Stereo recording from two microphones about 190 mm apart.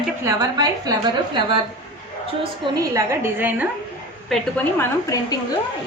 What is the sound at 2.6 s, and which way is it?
Speech, 15° right (ahead or behind).